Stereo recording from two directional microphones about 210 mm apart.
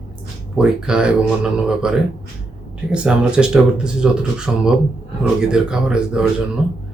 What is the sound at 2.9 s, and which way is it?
Speech, 5° right (ahead or behind).